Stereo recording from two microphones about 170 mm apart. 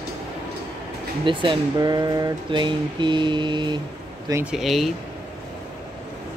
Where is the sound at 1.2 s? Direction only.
30° right (ahead or behind).